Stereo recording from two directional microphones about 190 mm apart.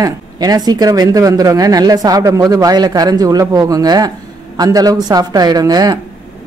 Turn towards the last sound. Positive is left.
turn(degrees=-20)  # may be behind; listen again after turning